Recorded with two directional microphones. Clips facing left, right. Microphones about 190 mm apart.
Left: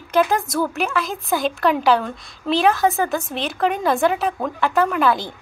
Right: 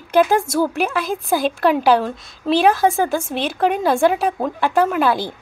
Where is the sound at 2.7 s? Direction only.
30° right (ahead or behind).